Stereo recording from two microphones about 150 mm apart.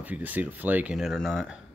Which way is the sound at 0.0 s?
10° right (ahead or behind).